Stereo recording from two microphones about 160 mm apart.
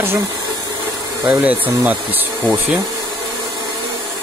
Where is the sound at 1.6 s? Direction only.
10° right (ahead or behind).